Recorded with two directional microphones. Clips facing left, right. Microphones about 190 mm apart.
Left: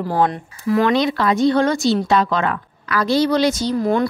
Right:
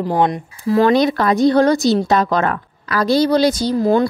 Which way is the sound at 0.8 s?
40° right (ahead or behind).